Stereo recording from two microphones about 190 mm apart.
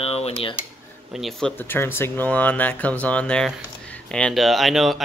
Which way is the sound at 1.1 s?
Centre (ahead or behind).